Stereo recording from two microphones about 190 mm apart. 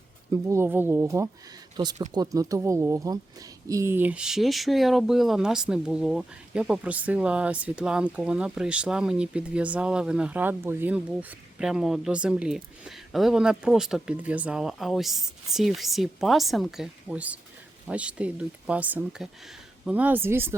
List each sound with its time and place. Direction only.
0.3 s speech: 15° right (ahead or behind)